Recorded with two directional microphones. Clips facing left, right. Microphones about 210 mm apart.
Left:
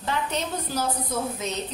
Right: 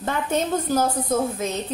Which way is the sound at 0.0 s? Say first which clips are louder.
Right 5 dB; 50° right (ahead or behind).